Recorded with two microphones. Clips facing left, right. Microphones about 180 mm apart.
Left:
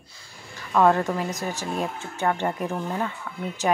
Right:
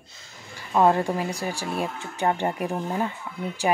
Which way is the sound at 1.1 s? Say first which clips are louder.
Even; 10° right (ahead or behind).